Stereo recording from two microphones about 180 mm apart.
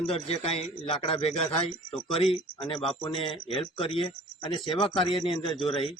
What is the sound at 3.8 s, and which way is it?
A man's voice, 30° left (ahead or behind).